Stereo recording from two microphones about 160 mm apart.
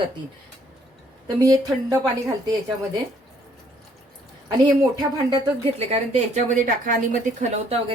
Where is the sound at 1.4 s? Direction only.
20° right (ahead or behind).